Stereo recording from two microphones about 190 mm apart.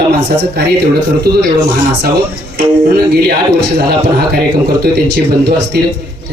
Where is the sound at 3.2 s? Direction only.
60° right (ahead or behind).